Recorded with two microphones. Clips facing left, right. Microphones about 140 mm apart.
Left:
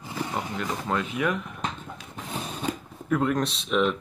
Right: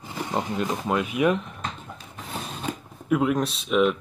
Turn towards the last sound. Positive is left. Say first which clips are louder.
# right 3 dB
turn(degrees=-5)  # may be behind; listen again after turning